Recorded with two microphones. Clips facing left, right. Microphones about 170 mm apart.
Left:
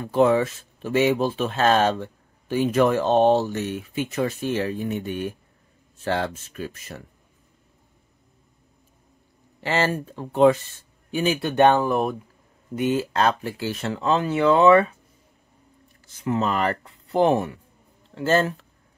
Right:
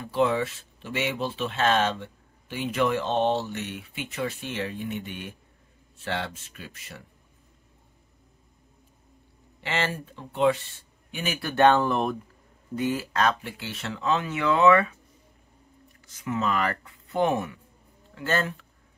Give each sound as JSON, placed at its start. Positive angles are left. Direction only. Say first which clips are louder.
{"t": 0.0, "sound": "speech", "louder": "left 6 dB", "side_deg": 45}
{"t": 9.6, "sound": "speech", "louder": "left 6 dB", "side_deg": 40}
{"t": 11.1, "sound": "speech", "louder": "left 8 dB", "side_deg": 30}
{"t": 12.7, "sound": "speech", "louder": "left 4 dB", "side_deg": 20}
{"t": 16.2, "sound": "speech", "louder": "left 4 dB", "side_deg": 30}